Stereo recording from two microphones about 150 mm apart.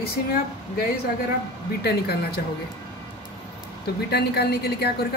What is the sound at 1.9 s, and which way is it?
Speech, 90° left.